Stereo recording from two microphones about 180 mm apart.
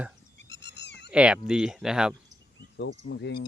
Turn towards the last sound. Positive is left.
turn(degrees=75)  # may be behind; listen again after turning